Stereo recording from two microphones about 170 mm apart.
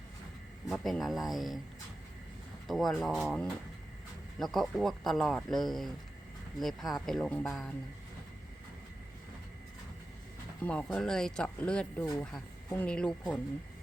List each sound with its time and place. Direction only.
0.7 s speech: centre (ahead or behind)
2.6 s speech: centre (ahead or behind)
10.6 s speech: 10° left (ahead or behind)